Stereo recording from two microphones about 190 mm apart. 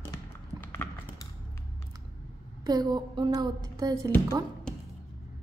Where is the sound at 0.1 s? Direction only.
20° left (ahead or behind).